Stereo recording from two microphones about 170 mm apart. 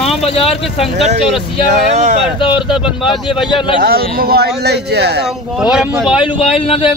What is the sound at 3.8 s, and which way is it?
Speech, 60° right (ahead or behind).